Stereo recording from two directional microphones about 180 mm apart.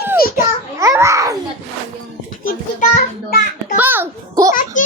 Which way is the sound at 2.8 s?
55° left (ahead or behind).